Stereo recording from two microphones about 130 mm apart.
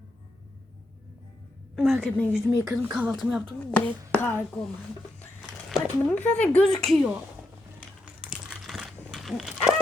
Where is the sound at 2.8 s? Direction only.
15° right (ahead or behind).